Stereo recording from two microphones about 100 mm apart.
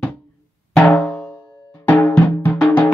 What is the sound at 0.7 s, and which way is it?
Music, 10° left (ahead or behind).